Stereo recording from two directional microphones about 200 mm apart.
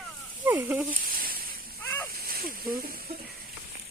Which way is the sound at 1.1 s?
45° right (ahead or behind).